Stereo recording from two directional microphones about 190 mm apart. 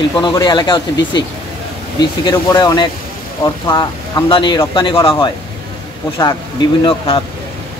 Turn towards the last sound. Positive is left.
turn(degrees=25)  # may be behind; listen again after turning